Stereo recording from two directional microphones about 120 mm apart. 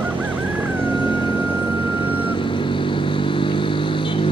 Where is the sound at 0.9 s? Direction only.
45° left (ahead or behind).